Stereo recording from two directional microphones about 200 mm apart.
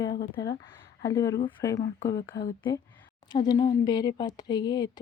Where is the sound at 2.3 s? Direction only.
55° left (ahead or behind).